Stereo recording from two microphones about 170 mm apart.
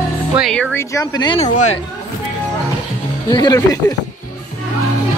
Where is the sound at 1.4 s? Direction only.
45° left (ahead or behind).